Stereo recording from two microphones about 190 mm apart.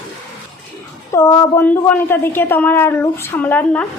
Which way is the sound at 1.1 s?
20° left (ahead or behind).